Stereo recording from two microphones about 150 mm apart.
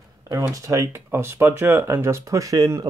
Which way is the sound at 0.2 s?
25° right (ahead or behind).